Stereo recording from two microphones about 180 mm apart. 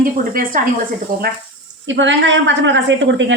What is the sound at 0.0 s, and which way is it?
Speech, 50° right (ahead or behind).